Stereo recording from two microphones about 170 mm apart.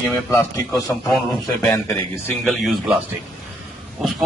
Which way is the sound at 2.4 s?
Centre (ahead or behind).